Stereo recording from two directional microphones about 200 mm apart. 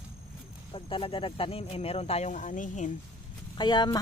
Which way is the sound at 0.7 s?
25° left (ahead or behind).